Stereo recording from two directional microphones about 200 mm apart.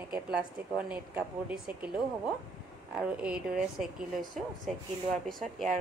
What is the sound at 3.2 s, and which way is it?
Speech, 5° right (ahead or behind).